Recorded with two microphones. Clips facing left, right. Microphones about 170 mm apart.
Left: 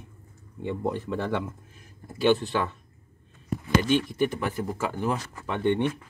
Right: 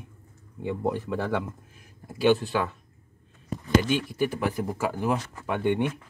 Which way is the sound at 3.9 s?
5° right (ahead or behind).